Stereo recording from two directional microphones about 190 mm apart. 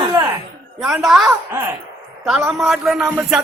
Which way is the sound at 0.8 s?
Centre (ahead or behind).